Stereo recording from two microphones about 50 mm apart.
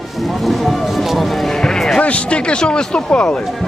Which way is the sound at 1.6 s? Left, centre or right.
Centre.